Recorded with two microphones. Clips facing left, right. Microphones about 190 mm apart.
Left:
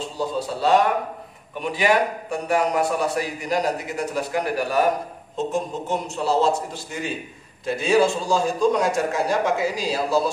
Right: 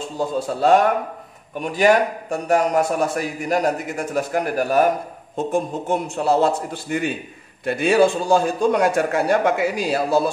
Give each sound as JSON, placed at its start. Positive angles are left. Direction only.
{"t": 0.0, "sound": "a man's voice", "side_deg": -50}